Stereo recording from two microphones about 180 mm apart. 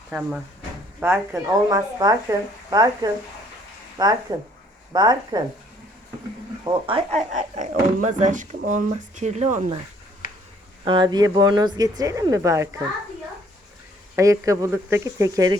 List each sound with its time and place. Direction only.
0.1 s speech: 5° right (ahead or behind); by 5.4 s 25° right (ahead or behind)
6.7 s speech: 30° right (ahead or behind)
7.3 s speech: 40° right (ahead or behind)
10.8 s speech: 25° right (ahead or behind)
14.2 s speech: 20° right (ahead or behind)